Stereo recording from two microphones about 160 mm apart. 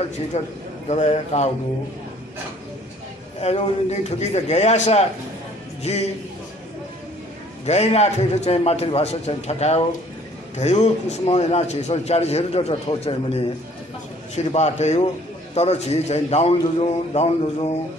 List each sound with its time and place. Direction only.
0.3 s a man's voice: 40° left (ahead or behind)
3.3 s a man's voice: 40° left (ahead or behind)
7.6 s a man's voice: 45° left (ahead or behind)